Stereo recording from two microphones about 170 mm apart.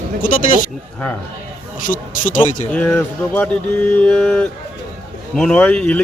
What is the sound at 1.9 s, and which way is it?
Speech, 50° left (ahead or behind).